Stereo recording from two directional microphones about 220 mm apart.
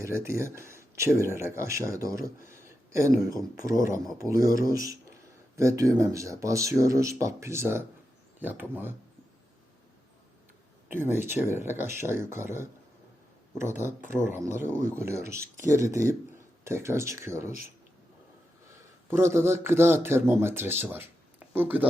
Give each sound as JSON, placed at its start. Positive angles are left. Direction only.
{"t": 0.0, "sound": "speech", "side_deg": -10}
{"t": 10.8, "sound": "speech", "side_deg": -10}
{"t": 14.3, "sound": "speech", "side_deg": -10}
{"t": 19.1, "sound": "speech", "side_deg": -10}